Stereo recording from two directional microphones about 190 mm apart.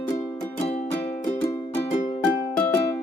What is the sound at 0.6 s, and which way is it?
Music, 35° left (ahead or behind).